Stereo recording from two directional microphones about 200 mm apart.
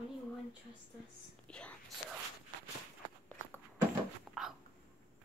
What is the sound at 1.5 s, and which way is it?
Whispering, 5° left (ahead or behind).